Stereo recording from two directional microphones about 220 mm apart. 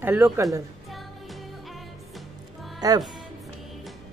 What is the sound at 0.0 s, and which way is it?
Speech, 10° right (ahead or behind).